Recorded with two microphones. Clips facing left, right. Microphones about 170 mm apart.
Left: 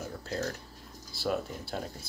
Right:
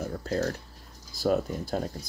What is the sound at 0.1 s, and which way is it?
Speech, 45° right (ahead or behind).